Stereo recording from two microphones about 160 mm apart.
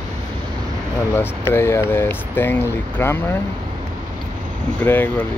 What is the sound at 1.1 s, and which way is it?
Speech, 15° left (ahead or behind).